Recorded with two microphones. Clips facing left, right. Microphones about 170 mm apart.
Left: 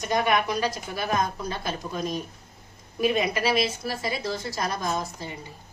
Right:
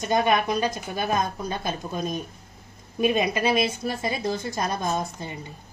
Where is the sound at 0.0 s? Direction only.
25° right (ahead or behind).